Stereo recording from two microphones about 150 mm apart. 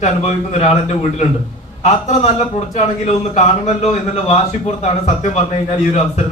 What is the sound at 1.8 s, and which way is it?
Speech, 45° left (ahead or behind).